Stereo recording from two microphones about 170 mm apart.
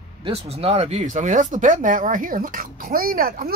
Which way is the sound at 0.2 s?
35° right (ahead or behind).